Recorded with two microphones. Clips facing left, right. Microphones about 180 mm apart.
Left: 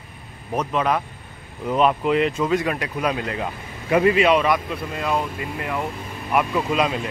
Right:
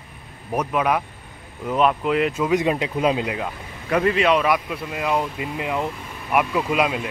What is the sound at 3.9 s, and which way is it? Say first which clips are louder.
Speech: left 2 dB; 5° left (ahead or behind).